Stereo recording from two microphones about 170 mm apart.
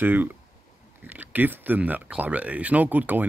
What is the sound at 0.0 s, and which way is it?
Speech, 10° right (ahead or behind).